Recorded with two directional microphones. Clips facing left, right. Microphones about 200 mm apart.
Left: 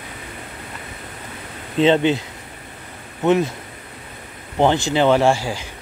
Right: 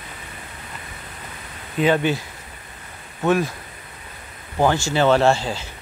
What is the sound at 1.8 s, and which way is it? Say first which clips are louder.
Speech: left 3 dB; 20° left (ahead or behind).